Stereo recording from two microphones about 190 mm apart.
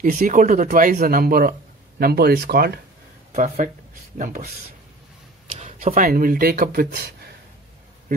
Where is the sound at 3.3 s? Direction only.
40° right (ahead or behind).